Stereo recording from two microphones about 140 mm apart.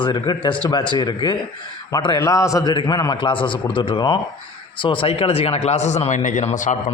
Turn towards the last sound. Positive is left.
turn(degrees=60)  # may be behind; listen again after turning